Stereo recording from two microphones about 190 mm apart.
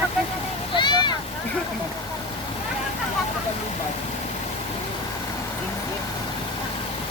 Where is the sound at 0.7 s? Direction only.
25° left (ahead or behind).